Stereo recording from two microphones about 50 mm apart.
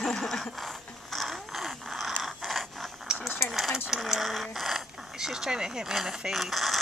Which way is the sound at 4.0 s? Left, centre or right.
Centre.